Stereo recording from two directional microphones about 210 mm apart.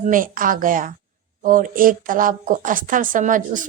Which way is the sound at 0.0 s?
40° right (ahead or behind).